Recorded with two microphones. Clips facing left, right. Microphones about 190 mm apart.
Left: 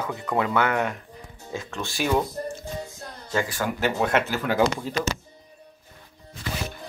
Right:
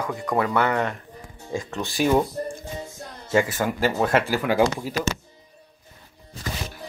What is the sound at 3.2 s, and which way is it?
Speech, 25° right (ahead or behind).